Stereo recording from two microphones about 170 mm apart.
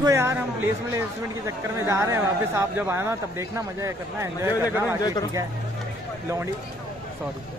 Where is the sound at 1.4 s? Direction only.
15° right (ahead or behind).